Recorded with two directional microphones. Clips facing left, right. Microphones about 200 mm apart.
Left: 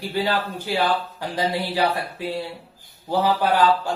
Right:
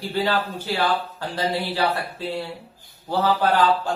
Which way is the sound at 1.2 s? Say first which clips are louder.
Left 1 dB; 15° left (ahead or behind).